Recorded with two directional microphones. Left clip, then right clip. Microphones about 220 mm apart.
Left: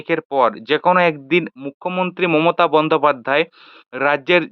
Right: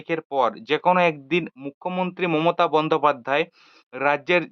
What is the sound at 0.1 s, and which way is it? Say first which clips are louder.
Speech: left 6 dB; 20° left (ahead or behind).